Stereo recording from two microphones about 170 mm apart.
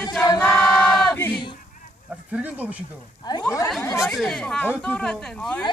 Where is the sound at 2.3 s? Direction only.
10° right (ahead or behind).